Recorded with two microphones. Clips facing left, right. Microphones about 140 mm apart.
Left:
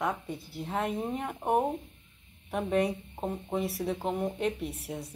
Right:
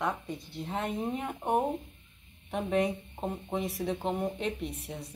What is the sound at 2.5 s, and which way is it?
Speech, centre (ahead or behind).